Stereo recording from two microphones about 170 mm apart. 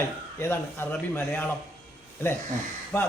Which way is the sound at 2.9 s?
10° left (ahead or behind).